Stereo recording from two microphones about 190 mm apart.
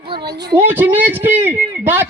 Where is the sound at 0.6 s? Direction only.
10° right (ahead or behind).